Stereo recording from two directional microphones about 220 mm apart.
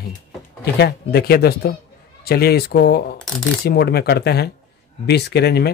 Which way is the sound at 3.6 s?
45° left (ahead or behind).